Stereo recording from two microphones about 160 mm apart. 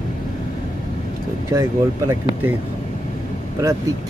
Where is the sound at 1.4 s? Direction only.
20° right (ahead or behind).